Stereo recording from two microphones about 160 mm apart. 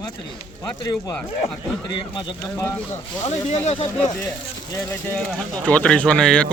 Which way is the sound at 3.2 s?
45° left (ahead or behind).